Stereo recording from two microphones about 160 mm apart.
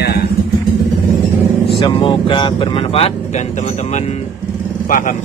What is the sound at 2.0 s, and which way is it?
Speech, 30° left (ahead or behind).